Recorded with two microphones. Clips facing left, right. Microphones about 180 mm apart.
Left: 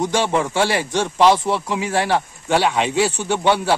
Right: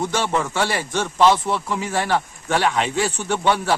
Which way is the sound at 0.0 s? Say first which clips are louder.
Left 3 dB; 10° left (ahead or behind).